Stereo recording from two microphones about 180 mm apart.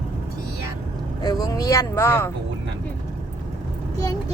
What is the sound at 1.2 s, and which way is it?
Speech, 20° left (ahead or behind).